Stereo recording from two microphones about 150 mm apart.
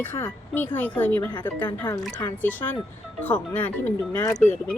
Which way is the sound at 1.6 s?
30° left (ahead or behind).